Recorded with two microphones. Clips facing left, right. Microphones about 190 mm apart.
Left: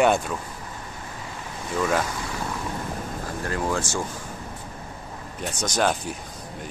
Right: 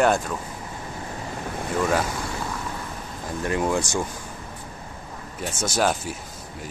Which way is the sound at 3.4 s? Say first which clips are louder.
Right 3 dB; 20° right (ahead or behind).